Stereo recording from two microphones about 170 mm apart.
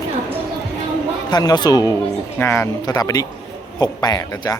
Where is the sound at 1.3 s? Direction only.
25° left (ahead or behind).